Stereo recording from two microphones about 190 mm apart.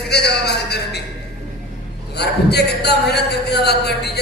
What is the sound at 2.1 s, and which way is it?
A man's voice, 60° left (ahead or behind).